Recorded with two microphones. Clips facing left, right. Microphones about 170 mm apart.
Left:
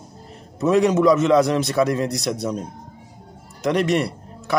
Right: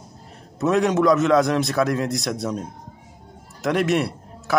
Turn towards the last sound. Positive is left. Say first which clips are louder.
# left 1 dB
turn(degrees=0)  # may be behind; listen again after turning